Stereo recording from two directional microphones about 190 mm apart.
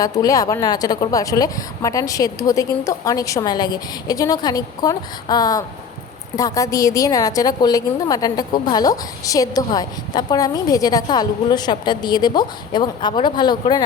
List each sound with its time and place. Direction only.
0.0 s a woman's voice: 20° left (ahead or behind)